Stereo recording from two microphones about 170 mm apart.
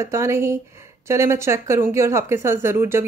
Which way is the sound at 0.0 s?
15° right (ahead or behind).